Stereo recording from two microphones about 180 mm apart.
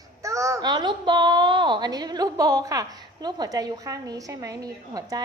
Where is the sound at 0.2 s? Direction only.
15° right (ahead or behind).